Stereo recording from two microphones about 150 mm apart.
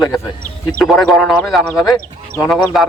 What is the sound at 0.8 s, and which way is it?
Speech, centre (ahead or behind).